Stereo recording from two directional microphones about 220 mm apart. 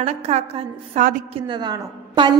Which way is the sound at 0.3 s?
30° right (ahead or behind).